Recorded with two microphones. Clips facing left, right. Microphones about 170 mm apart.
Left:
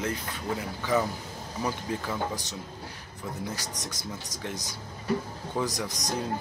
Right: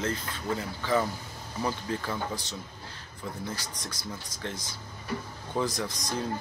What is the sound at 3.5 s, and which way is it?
Speech, 40° left (ahead or behind).